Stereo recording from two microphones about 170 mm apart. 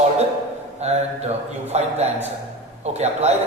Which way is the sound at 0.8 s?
40° right (ahead or behind).